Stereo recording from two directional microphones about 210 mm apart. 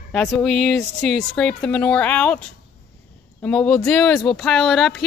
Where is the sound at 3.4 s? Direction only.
5° left (ahead or behind).